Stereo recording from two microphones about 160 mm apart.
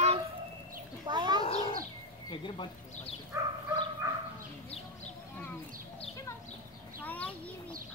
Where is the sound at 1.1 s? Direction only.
25° right (ahead or behind).